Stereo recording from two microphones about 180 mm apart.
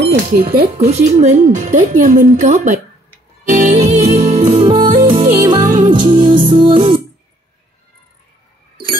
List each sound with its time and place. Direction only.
0.3 s speech: 55° right (ahead or behind)
0.7 s a woman's voice: 35° right (ahead or behind)
3.5 s music: 40° right (ahead or behind)
5.2 s music: 50° right (ahead or behind)
5.9 s music: 25° right (ahead or behind)